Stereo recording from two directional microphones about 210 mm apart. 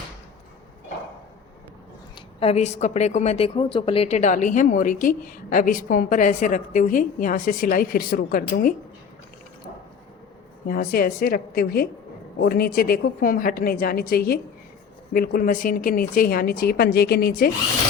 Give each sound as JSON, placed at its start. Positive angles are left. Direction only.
{"t": 2.1, "sound": "a woman's voice", "side_deg": 30}
{"t": 10.7, "sound": "a woman's voice", "side_deg": 45}